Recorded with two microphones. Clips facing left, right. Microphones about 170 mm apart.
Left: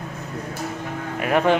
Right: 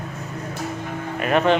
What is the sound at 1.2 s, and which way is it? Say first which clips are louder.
Speech: even; 10° left (ahead or behind).